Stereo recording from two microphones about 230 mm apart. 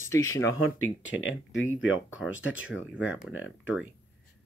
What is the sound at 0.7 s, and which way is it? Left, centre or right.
Speech, left.